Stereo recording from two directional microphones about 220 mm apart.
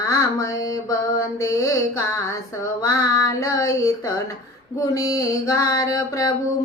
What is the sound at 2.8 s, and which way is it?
Music, 15° left (ahead or behind).